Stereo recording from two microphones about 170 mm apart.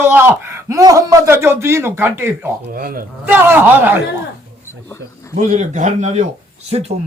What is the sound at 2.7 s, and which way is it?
Speech, 60° right (ahead or behind).